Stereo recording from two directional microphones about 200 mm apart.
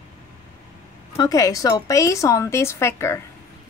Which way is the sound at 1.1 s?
15° left (ahead or behind).